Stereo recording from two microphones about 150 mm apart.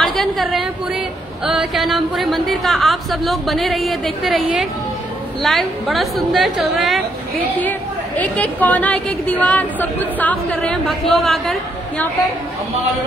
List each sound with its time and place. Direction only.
0.0 s a sound: centre (ahead or behind)
1.4 s a woman's voice: centre (ahead or behind)
8.2 s a woman's voice: 10° left (ahead or behind)